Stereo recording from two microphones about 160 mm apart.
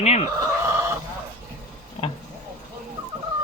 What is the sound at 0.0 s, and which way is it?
Speech, 45° left (ahead or behind).